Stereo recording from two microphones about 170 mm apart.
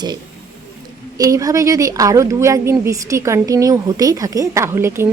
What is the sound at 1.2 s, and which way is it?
A woman's voice, 20° right (ahead or behind).